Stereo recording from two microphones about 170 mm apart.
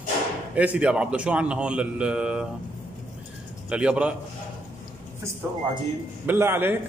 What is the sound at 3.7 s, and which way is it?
Speech, 5° right (ahead or behind).